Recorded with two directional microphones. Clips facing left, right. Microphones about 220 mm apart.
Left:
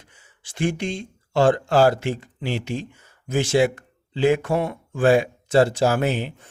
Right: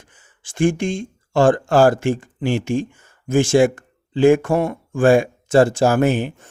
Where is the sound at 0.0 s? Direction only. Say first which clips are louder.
Right 2 dB; 50° right (ahead or behind).